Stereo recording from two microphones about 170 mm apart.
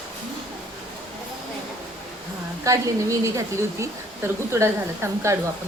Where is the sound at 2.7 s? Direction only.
20° right (ahead or behind).